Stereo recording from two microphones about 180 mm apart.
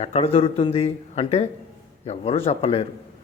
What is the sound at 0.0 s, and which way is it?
Speech, 35° left (ahead or behind).